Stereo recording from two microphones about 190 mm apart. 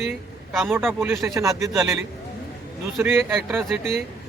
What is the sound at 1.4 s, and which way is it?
Speech, 15° right (ahead or behind).